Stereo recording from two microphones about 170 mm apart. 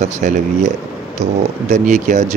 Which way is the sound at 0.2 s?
50° right (ahead or behind).